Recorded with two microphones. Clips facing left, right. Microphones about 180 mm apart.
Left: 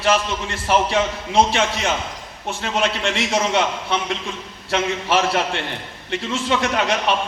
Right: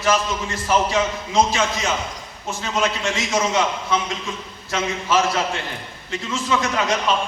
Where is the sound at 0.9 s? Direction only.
60° left (ahead or behind).